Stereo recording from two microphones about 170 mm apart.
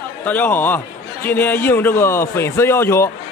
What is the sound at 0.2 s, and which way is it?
Speech, 10° left (ahead or behind).